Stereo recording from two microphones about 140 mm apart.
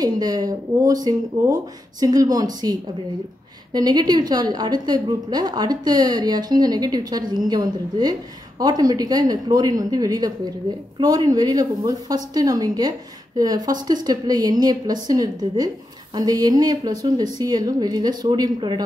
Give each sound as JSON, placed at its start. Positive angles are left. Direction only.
{"t": 0.0, "sound": "a woman's voice", "side_deg": -25}